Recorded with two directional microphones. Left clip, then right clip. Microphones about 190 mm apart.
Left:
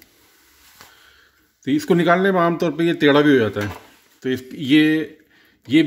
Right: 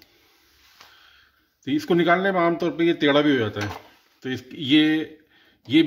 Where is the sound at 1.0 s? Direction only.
25° left (ahead or behind).